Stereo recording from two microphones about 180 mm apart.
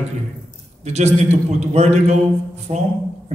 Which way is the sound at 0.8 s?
40° right (ahead or behind).